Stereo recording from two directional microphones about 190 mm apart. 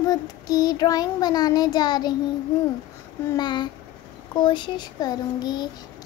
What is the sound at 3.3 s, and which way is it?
Child singing, 20° left (ahead or behind).